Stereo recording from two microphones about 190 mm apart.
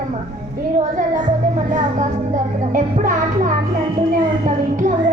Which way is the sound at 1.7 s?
40° right (ahead or behind).